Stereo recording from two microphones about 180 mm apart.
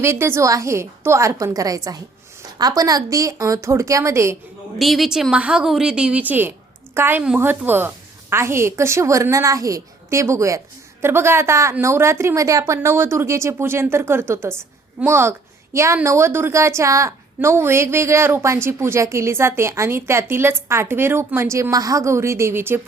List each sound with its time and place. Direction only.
0.0 s a woman's voice: 15° right (ahead or behind)
4.8 s a woman's voice: centre (ahead or behind)